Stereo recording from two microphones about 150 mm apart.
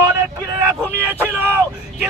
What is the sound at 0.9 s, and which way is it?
Speech, 15° right (ahead or behind).